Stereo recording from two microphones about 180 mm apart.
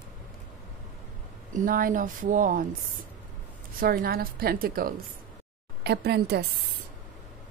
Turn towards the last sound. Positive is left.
turn(degrees=-65)  # may be behind; listen again after turning